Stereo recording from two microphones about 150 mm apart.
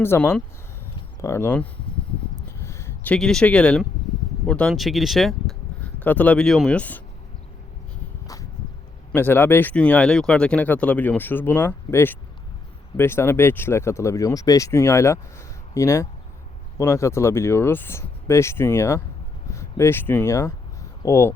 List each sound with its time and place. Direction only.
0.0 s speech: 15° left (ahead or behind)
2.6 s speech: 20° left (ahead or behind)
9.1 s speech: 15° left (ahead or behind)